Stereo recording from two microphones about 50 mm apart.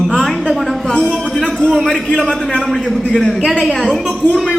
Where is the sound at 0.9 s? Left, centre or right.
Left.